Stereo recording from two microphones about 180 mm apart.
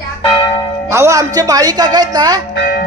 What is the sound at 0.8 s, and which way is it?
Speech, 15° right (ahead or behind).